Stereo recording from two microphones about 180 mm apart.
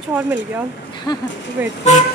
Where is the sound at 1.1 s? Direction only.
20° left (ahead or behind).